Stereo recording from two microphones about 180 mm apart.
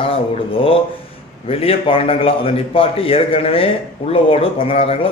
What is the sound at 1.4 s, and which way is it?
Speech, 30° left (ahead or behind).